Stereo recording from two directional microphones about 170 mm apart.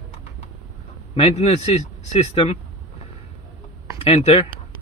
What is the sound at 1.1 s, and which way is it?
Speech, 35° left (ahead or behind).